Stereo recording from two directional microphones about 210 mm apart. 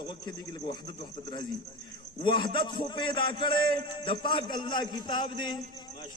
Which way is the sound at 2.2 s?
25° left (ahead or behind).